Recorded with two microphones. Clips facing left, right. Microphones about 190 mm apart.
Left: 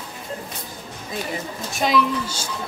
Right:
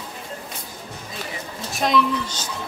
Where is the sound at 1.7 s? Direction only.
Centre (ahead or behind).